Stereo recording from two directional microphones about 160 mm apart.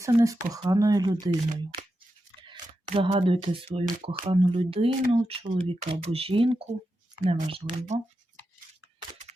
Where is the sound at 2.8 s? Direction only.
40° right (ahead or behind).